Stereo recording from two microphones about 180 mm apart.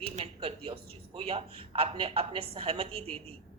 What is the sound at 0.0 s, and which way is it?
A man's voice, 30° right (ahead or behind).